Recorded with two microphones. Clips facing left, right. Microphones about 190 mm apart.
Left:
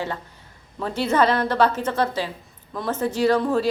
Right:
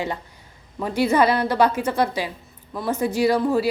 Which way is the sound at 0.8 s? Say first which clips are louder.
Right 2 dB; 10° right (ahead or behind).